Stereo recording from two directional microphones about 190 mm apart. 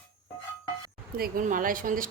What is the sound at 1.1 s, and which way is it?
Speech, 50° right (ahead or behind).